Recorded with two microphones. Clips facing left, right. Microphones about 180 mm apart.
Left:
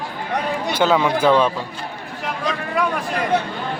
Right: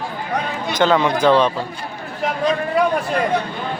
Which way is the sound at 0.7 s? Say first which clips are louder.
Right 1 dB; 10° left (ahead or behind).